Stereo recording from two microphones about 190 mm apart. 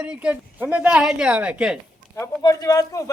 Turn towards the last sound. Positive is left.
turn(degrees=15)  # may be behind; listen again after turning